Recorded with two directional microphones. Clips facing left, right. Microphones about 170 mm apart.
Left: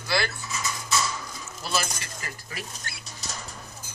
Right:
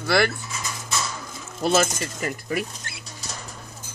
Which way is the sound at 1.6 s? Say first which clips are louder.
Right 10 dB; 50° right (ahead or behind).